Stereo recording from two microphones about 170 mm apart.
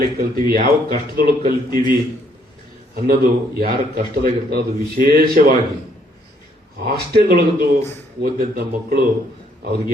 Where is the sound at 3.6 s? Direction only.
60° right (ahead or behind).